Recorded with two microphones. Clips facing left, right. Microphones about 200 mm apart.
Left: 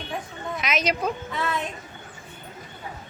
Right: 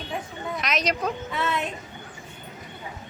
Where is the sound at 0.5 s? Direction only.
Centre (ahead or behind).